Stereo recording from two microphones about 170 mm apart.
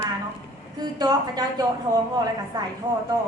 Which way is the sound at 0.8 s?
25° right (ahead or behind).